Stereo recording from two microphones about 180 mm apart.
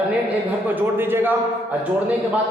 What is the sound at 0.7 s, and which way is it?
Speech, 10° right (ahead or behind).